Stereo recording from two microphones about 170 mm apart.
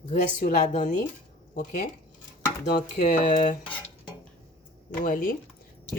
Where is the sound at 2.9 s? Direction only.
45° left (ahead or behind).